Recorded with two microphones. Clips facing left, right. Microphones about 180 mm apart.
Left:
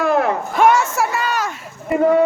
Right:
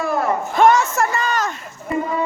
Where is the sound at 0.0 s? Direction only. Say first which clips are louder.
Left 3 dB; 65° left (ahead or behind).